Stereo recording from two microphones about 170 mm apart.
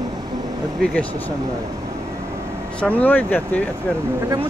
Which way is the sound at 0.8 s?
5° left (ahead or behind).